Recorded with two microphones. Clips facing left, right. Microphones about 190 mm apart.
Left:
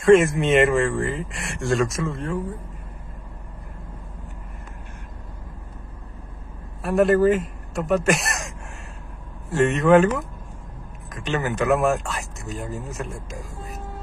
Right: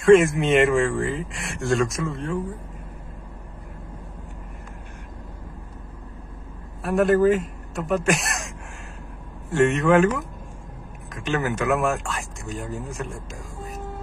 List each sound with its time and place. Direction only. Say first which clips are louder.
0.0 s speech: even; centre (ahead or behind)
6.8 s speech: left 1 dB; centre (ahead or behind)
11.2 s speech: left 1 dB; centre (ahead or behind)
11.9 s speech: left 3 dB; 40° left (ahead or behind)
12.4 s speech: even; centre (ahead or behind)